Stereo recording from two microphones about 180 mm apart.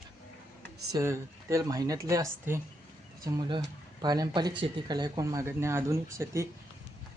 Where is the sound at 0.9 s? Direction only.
15° right (ahead or behind).